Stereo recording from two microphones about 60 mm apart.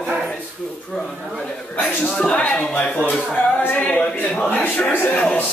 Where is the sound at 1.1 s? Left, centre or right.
Centre.